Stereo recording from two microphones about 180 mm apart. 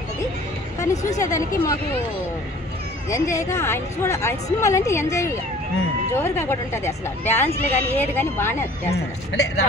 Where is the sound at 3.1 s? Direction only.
15° left (ahead or behind).